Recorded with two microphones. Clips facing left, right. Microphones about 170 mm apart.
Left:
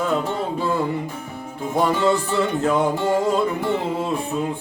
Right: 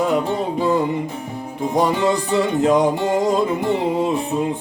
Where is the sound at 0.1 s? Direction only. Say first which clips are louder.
Right 3 dB; 15° right (ahead or behind).